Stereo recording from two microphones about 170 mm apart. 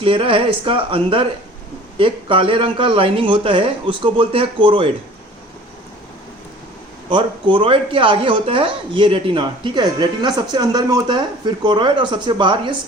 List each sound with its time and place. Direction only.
0.0 s speech: 35° right (ahead or behind)
7.1 s speech: 30° right (ahead or behind)